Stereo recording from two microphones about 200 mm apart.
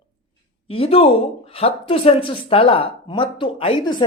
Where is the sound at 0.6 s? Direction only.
30° left (ahead or behind).